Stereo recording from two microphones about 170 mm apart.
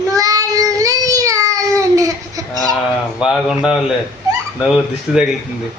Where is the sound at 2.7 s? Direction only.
Centre (ahead or behind).